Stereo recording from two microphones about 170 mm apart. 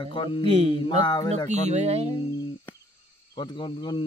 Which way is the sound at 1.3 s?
40° right (ahead or behind).